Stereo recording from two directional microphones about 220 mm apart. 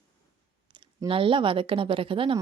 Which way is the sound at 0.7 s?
20° right (ahead or behind).